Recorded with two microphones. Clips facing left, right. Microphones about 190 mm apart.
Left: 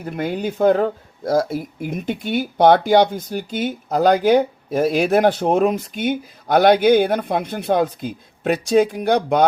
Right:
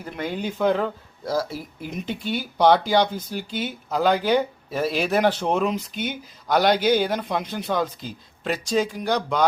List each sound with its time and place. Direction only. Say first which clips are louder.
0.0 s speech: left 5 dB; 40° left (ahead or behind)